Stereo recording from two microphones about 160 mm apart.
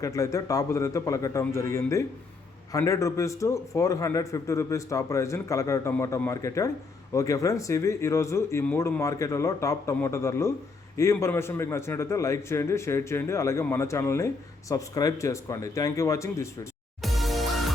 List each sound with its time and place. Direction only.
0.0 s a man's voice: 20° left (ahead or behind)
17.0 s music: centre (ahead or behind)